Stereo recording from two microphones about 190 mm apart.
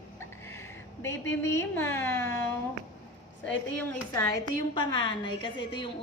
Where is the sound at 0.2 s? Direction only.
15° left (ahead or behind).